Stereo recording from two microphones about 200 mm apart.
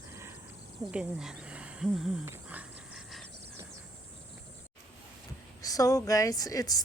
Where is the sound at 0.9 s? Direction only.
5° right (ahead or behind).